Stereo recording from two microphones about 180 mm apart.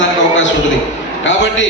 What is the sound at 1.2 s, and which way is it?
Speech, 90° left.